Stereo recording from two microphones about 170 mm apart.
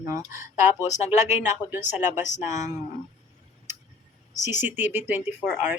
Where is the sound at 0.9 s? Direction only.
45° left (ahead or behind).